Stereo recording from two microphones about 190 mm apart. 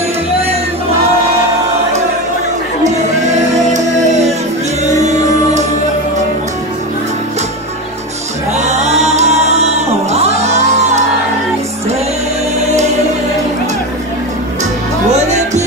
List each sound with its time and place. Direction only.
2.8 s singing: 40° right (ahead or behind)
4.8 s music: 35° right (ahead or behind)
8.5 s music: 35° right (ahead or behind)
12.6 s music: 35° right (ahead or behind)